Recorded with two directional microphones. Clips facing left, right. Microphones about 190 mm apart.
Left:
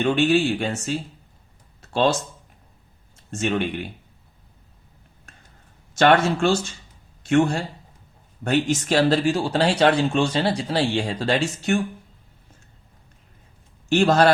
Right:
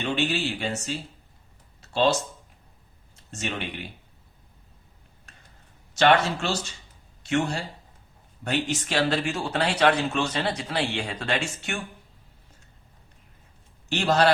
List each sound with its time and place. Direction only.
0.0 s speech: 50° left (ahead or behind)
1.8 s a sound: 50° left (ahead or behind)
3.3 s speech: 50° left (ahead or behind)
5.9 s a man's voice: 50° left (ahead or behind)
13.9 s speech: 50° left (ahead or behind)